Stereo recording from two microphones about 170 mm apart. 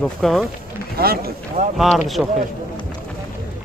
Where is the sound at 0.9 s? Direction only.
65° right (ahead or behind).